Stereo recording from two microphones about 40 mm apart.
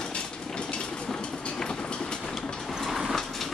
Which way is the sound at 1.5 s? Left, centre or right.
Centre.